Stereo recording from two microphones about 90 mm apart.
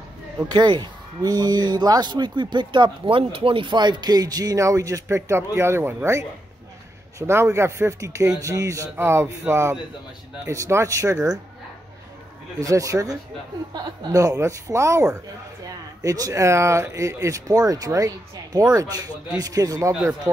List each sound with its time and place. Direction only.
0.5 s speech: 55° right (ahead or behind); by 5.9 s 30° right (ahead or behind)
7.2 s speech: 30° right (ahead or behind)
12.5 s speech: 40° right (ahead or behind)